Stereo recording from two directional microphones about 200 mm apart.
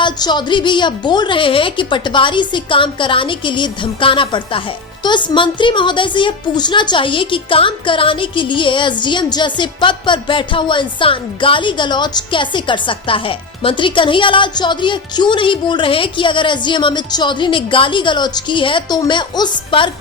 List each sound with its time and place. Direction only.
0.0 s a woman's voice: 20° left (ahead or behind)